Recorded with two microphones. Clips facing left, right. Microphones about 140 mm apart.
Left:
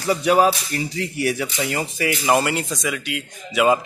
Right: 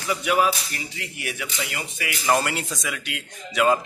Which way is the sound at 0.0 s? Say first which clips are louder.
Left 5 dB; 35° left (ahead or behind).